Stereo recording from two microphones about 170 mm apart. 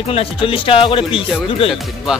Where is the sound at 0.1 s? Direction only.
30° left (ahead or behind).